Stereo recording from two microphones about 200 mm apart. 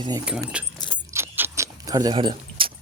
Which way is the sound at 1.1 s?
10° right (ahead or behind).